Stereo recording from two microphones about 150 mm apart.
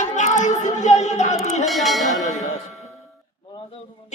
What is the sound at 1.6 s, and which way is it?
Bell, centre (ahead or behind).